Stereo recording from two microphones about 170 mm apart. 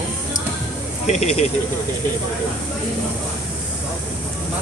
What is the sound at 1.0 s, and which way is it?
Speech, 40° left (ahead or behind).